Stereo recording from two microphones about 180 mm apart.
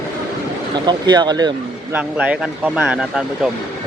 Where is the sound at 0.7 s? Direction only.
25° right (ahead or behind).